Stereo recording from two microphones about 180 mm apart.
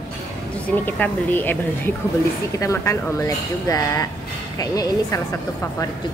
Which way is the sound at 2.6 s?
15° left (ahead or behind).